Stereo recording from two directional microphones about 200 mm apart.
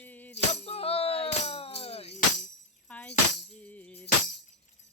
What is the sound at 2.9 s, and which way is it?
Tambourine, 5° left (ahead or behind).